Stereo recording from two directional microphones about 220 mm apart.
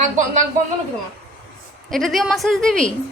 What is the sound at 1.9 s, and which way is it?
A woman's voice, centre (ahead or behind).